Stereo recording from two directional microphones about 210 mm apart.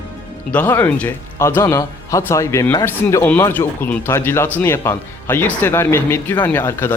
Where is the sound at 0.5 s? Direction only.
10° left (ahead or behind).